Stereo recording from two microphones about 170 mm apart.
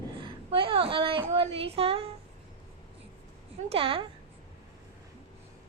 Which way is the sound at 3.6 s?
35° right (ahead or behind).